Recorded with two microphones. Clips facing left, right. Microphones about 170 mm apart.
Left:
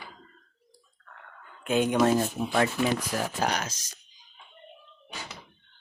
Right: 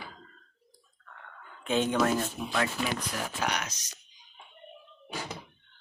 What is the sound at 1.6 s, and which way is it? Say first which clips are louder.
Speech: left 3 dB; 10° left (ahead or behind).